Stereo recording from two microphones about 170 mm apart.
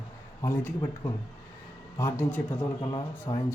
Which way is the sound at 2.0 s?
15° left (ahead or behind).